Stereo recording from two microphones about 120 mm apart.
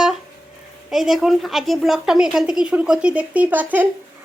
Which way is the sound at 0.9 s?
Centre (ahead or behind).